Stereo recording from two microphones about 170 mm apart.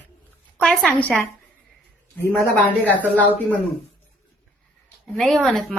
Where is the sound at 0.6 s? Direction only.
5° left (ahead or behind).